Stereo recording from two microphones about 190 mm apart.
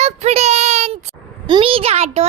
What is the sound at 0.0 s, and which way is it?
Child singing, 35° right (ahead or behind).